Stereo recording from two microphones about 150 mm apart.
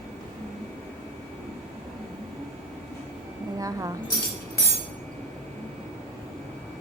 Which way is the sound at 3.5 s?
20° right (ahead or behind).